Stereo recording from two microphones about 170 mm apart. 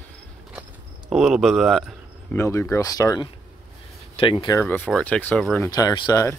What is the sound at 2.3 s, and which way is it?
Speech, 15° left (ahead or behind).